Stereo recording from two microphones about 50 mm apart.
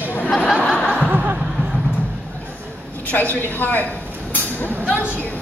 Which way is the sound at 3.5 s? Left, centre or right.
Left.